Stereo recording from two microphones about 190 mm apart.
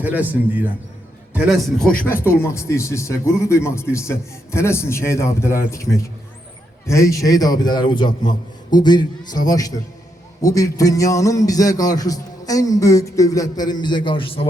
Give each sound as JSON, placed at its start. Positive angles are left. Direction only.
{"t": 0.0, "sound": "a man's voice", "side_deg": -10}
{"t": 2.2, "sound": "a man's voice", "side_deg": 15}